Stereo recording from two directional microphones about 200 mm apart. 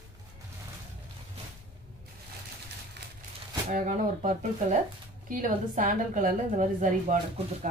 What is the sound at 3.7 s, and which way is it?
A woman's voice, 40° right (ahead or behind).